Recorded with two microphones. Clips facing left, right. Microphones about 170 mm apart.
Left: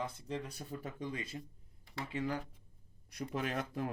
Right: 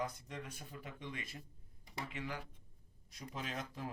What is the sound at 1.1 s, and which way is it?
Speech, 25° left (ahead or behind).